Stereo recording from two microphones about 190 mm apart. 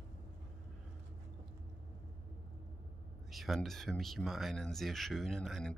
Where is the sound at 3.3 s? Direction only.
Centre (ahead or behind).